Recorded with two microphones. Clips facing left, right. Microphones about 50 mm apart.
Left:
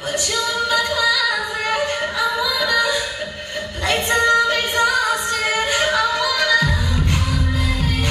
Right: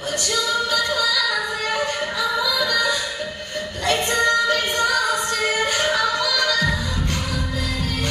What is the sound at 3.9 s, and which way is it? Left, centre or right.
Music, left.